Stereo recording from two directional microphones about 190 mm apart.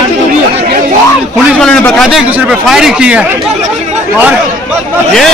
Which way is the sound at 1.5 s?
5° left (ahead or behind).